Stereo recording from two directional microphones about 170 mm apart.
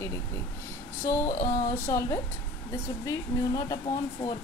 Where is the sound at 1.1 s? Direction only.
15° left (ahead or behind).